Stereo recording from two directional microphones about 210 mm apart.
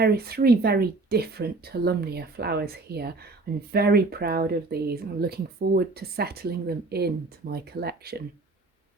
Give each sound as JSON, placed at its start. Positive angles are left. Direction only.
{"t": 0.0, "sound": "speech", "side_deg": -50}